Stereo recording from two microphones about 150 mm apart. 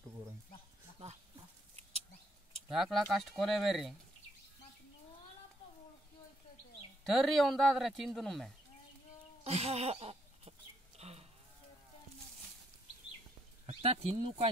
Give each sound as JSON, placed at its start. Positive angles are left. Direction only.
{"t": 1.8, "sound": "a sound", "side_deg": -45}
{"t": 2.7, "sound": "speech", "side_deg": 0}
{"t": 7.1, "sound": "speech", "side_deg": 0}
{"t": 9.4, "sound": "speech", "side_deg": -45}
{"t": 11.0, "sound": "livestock", "side_deg": -45}
{"t": 13.7, "sound": "speech", "side_deg": -40}